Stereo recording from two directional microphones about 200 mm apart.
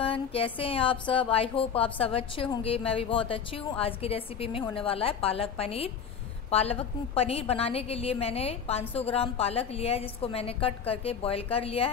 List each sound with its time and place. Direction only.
0.0 s a woman's voice: 30° left (ahead or behind)